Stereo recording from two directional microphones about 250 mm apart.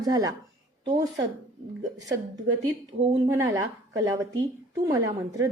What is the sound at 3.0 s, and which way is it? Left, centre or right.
Speech, right.